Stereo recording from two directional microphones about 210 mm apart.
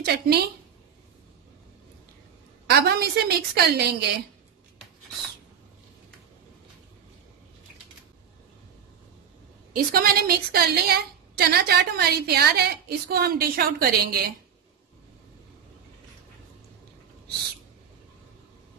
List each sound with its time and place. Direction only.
0.0 s a woman's voice: 50° right (ahead or behind)
2.6 s a woman's voice: 50° right (ahead or behind)
9.9 s a woman's voice: 45° right (ahead or behind)